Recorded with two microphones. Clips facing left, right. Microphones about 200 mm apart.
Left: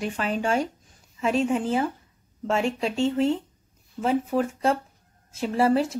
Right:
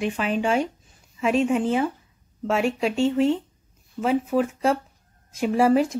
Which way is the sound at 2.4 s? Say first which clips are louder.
Right 2 dB; 10° right (ahead or behind).